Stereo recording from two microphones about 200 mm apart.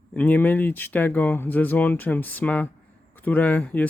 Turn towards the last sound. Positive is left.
turn(degrees=10)  # may be behind; listen again after turning